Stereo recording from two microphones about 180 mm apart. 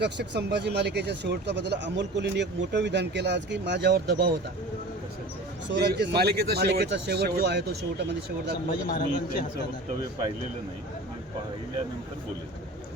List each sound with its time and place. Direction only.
0.0 s speech: 70° right (ahead or behind)
5.7 s speech: 65° right (ahead or behind)
8.9 s a man's voice: 55° left (ahead or behind)